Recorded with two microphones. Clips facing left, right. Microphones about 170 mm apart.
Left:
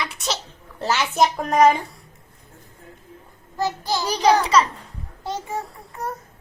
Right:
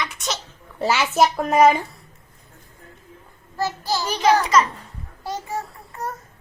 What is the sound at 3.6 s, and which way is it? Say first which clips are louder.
Child singing: left 1 dB; 15° left (ahead or behind).